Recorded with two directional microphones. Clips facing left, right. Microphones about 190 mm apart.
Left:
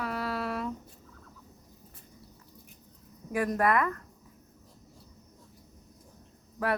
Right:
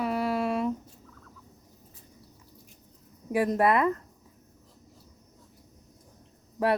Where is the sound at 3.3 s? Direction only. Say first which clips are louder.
Right 3 dB; 20° right (ahead or behind).